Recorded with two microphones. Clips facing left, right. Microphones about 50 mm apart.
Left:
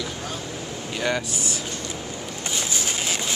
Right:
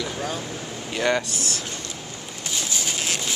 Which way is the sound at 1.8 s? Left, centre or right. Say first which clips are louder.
Left 3 dB; centre.